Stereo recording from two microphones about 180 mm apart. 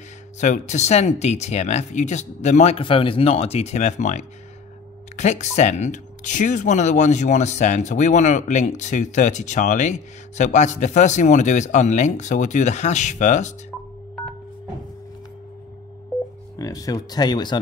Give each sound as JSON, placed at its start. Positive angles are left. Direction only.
{"t": 0.4, "sound": "speech", "side_deg": 40}
{"t": 16.5, "sound": "speech", "side_deg": 20}